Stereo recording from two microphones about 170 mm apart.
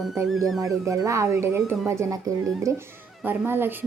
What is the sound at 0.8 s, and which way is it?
Speech, 20° right (ahead or behind).